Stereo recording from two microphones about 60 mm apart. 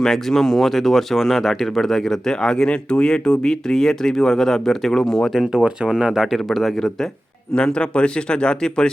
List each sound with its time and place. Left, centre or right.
0.0 s speech: centre
5.5 s speech: centre
5.9 s speech: centre